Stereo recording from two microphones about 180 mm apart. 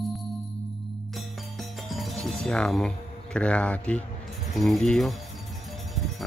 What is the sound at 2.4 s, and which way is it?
Speech, 5° left (ahead or behind).